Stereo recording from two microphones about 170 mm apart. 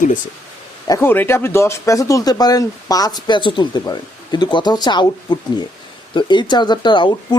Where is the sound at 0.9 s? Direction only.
15° left (ahead or behind).